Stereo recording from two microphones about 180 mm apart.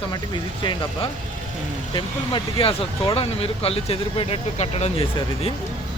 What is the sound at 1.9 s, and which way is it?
Speech, 25° left (ahead or behind).